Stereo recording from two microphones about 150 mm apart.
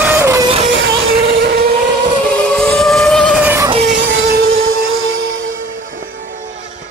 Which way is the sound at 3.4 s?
15° right (ahead or behind).